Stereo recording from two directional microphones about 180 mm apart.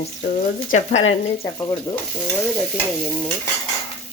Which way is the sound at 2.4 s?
Centre (ahead or behind).